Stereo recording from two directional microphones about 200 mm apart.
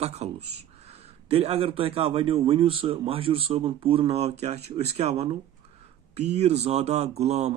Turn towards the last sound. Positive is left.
turn(degrees=-35)  # may be behind; listen again after turning